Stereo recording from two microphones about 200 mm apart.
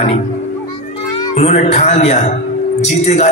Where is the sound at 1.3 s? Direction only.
35° left (ahead or behind).